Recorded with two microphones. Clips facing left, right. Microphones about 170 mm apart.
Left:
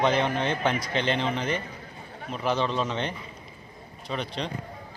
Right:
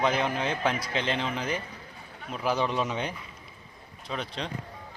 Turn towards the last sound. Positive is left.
turn(degrees=0)  # may be behind; listen again after turning